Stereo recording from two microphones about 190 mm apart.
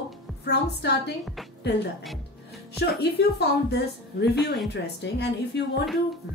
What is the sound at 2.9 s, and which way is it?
A woman's voice, 60° left (ahead or behind).